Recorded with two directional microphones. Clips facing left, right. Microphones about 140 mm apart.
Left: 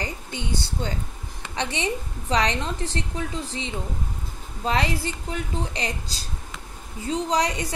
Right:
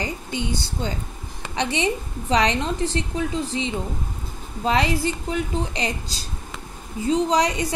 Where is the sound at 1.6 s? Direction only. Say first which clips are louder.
Right 4 dB; 20° right (ahead or behind).